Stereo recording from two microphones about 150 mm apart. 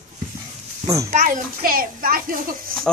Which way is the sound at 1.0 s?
60° right (ahead or behind).